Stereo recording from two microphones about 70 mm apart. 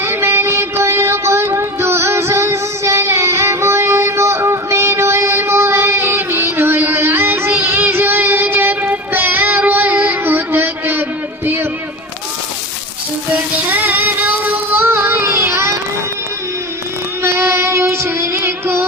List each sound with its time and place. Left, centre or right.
0.0 s music: right
13.6 s child singing: right
17.2 s child singing: right